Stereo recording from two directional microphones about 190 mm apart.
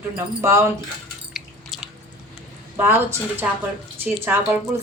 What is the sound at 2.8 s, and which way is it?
A woman's voice, 10° right (ahead or behind).